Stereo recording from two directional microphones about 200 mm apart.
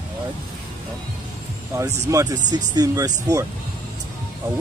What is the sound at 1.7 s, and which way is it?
Speech, 15° right (ahead or behind).